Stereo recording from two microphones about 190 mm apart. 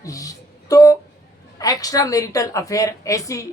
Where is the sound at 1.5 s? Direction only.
20° left (ahead or behind).